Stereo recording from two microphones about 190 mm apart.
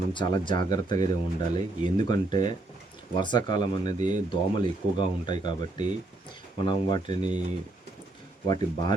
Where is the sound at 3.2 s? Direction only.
25° left (ahead or behind).